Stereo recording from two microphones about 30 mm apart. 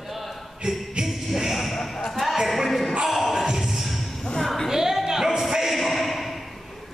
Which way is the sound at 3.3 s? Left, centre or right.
Centre.